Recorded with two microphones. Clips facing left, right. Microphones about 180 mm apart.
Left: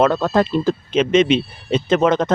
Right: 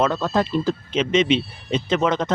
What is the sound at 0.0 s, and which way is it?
Speech, 55° left (ahead or behind).